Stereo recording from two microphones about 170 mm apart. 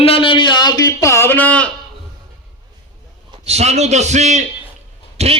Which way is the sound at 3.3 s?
40° right (ahead or behind).